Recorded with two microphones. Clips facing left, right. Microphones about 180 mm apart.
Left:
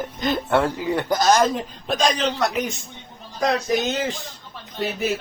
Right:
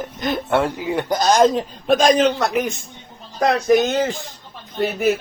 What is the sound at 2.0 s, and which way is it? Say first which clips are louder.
Speech: right 4 dB; 55° right (ahead or behind).